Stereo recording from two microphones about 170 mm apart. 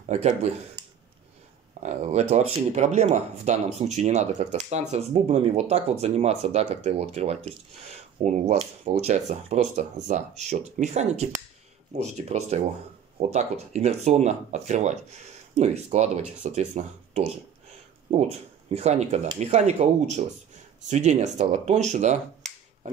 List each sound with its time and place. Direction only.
0.1 s speech: 40° right (ahead or behind)
1.8 s speech: 45° right (ahead or behind)